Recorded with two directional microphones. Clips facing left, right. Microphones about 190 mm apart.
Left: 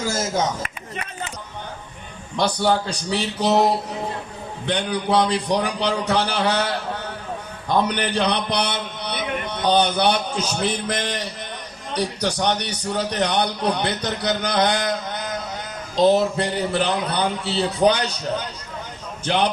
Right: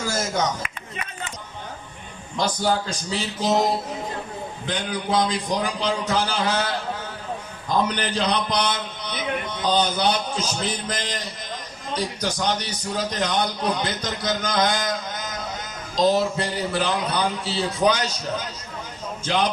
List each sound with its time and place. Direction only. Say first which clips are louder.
0.1 s a sound: even; 25° left (ahead or behind)
2.3 s a man's voice: left 3 dB; 65° left (ahead or behind)
4.6 s a man's voice: left 5 dB; 65° left (ahead or behind)